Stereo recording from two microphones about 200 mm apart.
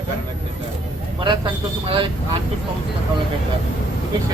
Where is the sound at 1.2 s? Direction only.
25° right (ahead or behind).